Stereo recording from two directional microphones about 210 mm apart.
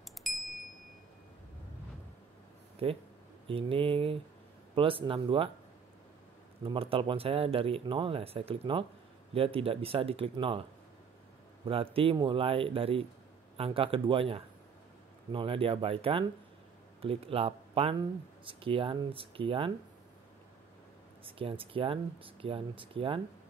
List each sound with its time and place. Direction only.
0.2 s a sound: centre (ahead or behind)
3.4 s speech: 25° right (ahead or behind)
6.6 s speech: 25° right (ahead or behind)
11.6 s speech: 25° right (ahead or behind)
21.3 s speech: 25° right (ahead or behind)